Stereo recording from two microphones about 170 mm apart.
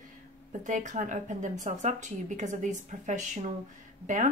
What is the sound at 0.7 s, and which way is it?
Speech, 45° right (ahead or behind).